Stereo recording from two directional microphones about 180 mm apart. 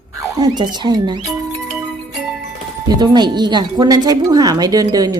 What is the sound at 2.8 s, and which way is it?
Speech, 25° right (ahead or behind).